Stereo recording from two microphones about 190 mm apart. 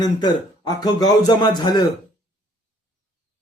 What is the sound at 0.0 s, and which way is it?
Speech, 20° left (ahead or behind).